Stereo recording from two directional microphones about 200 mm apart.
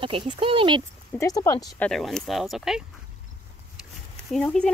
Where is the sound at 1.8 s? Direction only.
5° left (ahead or behind).